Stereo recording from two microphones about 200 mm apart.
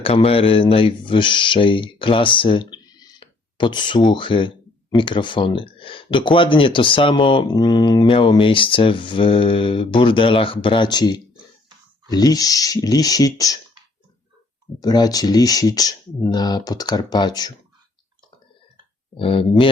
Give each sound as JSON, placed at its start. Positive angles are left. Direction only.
{"t": 0.0, "sound": "speech", "side_deg": 30}
{"t": 14.8, "sound": "speech", "side_deg": 20}
{"t": 19.1, "sound": "speech", "side_deg": 25}